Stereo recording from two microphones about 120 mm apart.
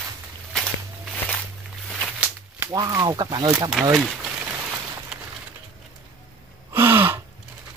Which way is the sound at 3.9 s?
Centre (ahead or behind).